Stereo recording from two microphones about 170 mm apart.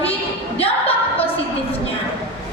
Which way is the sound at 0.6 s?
35° left (ahead or behind).